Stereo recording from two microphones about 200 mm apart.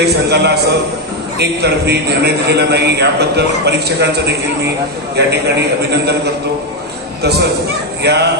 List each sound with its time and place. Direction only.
0.0 s a man's voice: 55° right (ahead or behind)
8.0 s speech: 55° right (ahead or behind)